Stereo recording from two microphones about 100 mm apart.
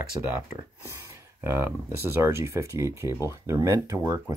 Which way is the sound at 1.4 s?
25° right (ahead or behind).